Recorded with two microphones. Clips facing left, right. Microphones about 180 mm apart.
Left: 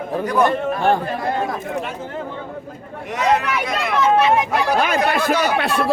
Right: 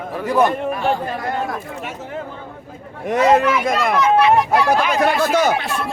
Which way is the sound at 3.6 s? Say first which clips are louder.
Right 4 dB; 50° right (ahead or behind).